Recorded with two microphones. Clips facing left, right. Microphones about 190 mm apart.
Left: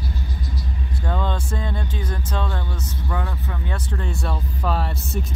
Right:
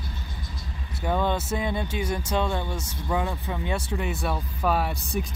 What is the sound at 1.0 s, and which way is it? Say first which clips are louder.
Speech: right 2 dB; 10° right (ahead or behind).